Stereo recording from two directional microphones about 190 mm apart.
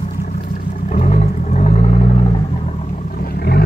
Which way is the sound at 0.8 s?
40° left (ahead or behind).